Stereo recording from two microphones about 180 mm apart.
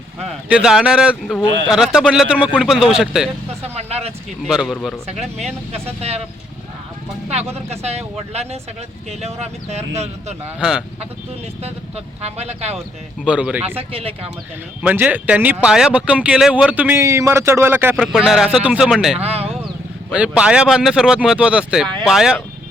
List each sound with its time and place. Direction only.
0.2 s speech: 5° right (ahead or behind)
3.8 s a sound: 35° right (ahead or behind)
4.4 s speech: 5° right (ahead or behind)
5.7 s speech: 35° right (ahead or behind)
7.3 s speech: 35° right (ahead or behind)
10.6 s speech: 5° right (ahead or behind)
11.6 s speech: 35° right (ahead or behind)
13.2 s speech: 5° right (ahead or behind)
13.7 s speech: 35° right (ahead or behind)
14.8 s speech: 10° right (ahead or behind)
17.9 s speech: centre (ahead or behind)
19.2 s speech: 35° right (ahead or behind)
20.1 s speech: 5° right (ahead or behind)